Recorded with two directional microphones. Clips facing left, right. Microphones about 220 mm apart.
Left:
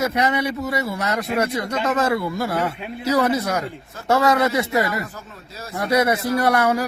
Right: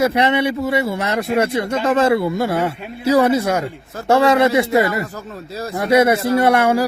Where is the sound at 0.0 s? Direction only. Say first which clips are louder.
Right 5 dB; 30° right (ahead or behind).